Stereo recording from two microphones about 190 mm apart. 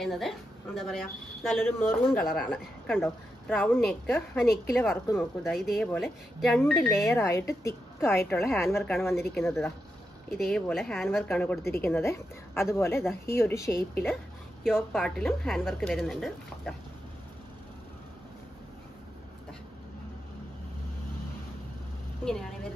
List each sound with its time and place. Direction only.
0.0 s speech: centre (ahead or behind)
1.6 s a woman's voice: 10° left (ahead or behind)
7.1 s a woman's voice: 15° left (ahead or behind)
10.3 s a woman's voice: centre (ahead or behind)
14.6 s speech: 5° right (ahead or behind)
22.2 s speech: 5° left (ahead or behind)